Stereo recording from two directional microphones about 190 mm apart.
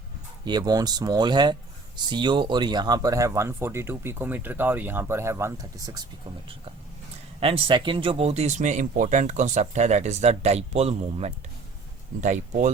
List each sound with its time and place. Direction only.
0.4 s speech: 20° right (ahead or behind)
7.3 s speech: 30° right (ahead or behind)